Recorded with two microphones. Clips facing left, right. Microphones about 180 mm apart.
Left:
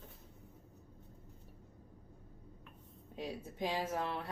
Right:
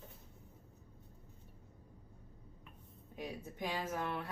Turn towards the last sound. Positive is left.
turn(degrees=25)  # may be behind; listen again after turning